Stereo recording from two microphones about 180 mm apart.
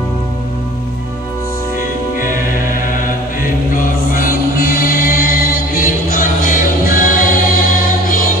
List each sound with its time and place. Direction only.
1.8 s music: 50° left (ahead or behind)